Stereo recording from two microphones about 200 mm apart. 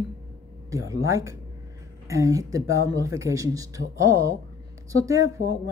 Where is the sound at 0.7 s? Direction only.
15° right (ahead or behind).